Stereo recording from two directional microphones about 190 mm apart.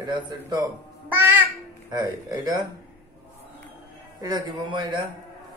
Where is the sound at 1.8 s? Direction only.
20° right (ahead or behind).